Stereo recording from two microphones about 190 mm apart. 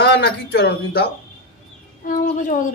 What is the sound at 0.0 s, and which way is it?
Speech, 60° left (ahead or behind).